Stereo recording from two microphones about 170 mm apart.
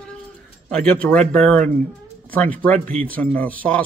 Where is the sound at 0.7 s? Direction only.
5° left (ahead or behind).